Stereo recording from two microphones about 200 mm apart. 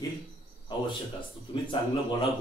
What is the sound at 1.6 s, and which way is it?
Speech, 30° left (ahead or behind).